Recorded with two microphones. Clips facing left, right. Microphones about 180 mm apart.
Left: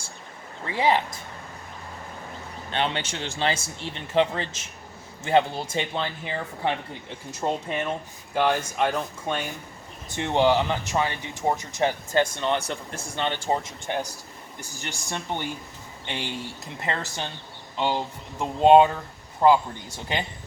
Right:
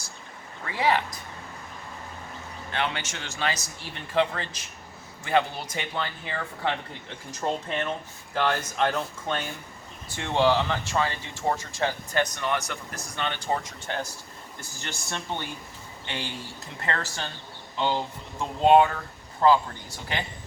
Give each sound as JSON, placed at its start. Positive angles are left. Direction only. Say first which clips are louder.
{"t": 0.6, "sound": "speech", "louder": "left 2 dB", "side_deg": 20}
{"t": 2.7, "sound": "speech", "louder": "left 3 dB", "side_deg": 30}
{"t": 16.8, "sound": "speech", "louder": "left 1 dB", "side_deg": 20}